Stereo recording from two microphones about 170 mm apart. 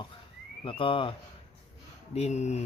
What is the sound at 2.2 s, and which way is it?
Speech, 40° left (ahead or behind).